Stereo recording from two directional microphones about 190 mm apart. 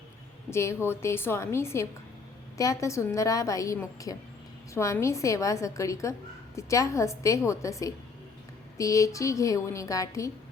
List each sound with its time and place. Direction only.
0.5 s a woman's voice: 15° left (ahead or behind)